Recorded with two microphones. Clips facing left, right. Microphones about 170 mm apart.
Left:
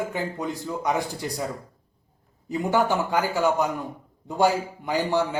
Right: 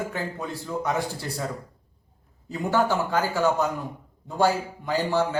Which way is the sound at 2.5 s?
15° left (ahead or behind).